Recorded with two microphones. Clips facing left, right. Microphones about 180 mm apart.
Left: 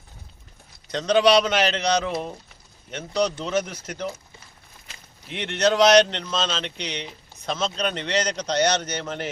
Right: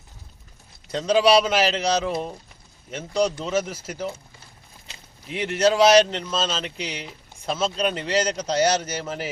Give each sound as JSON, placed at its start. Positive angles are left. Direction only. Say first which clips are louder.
{"t": 0.9, "sound": "a man's voice", "louder": "even", "side_deg": -5}
{"t": 3.4, "sound": "a man's voice", "louder": "right 1 dB", "side_deg": -5}
{"t": 5.3, "sound": "a man's voice", "louder": "right 2 dB", "side_deg": -5}